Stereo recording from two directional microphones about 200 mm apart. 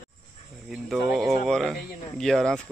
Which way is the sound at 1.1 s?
Centre (ahead or behind).